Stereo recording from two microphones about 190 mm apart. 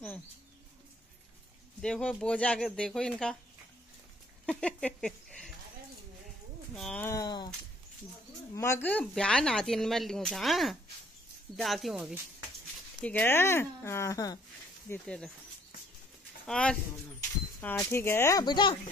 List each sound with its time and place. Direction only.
1.8 s speech: 5° left (ahead or behind)
4.5 s speech: 5° left (ahead or behind)
6.7 s speech: 5° left (ahead or behind)
7.1 s speech: 20° left (ahead or behind)
8.5 s speech: 15° left (ahead or behind); by 12.2 s centre (ahead or behind)
13.0 s speech: 10° left (ahead or behind)
14.9 s speech: 5° left (ahead or behind)
16.4 s speech: 5° left (ahead or behind); by 18.8 s 25° left (ahead or behind)